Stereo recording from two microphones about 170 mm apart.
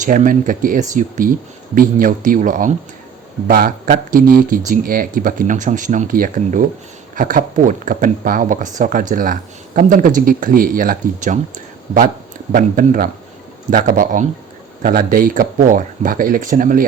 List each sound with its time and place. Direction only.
0.0 s a man's voice: 50° right (ahead or behind)